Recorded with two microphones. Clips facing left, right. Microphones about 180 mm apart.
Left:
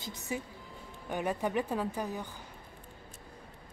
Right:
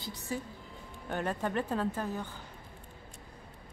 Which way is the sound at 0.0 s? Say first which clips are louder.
Even; 20° left (ahead or behind).